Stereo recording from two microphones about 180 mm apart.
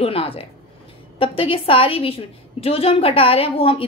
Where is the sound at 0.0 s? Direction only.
30° left (ahead or behind).